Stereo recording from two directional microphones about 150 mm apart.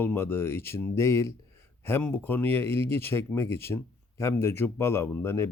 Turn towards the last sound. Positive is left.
turn(degrees=15)  # may be behind; listen again after turning